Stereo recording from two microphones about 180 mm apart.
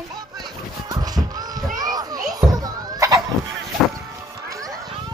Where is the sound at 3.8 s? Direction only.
Centre (ahead or behind).